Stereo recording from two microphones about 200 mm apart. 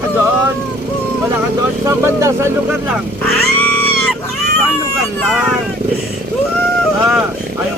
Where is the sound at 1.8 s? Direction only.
15° right (ahead or behind).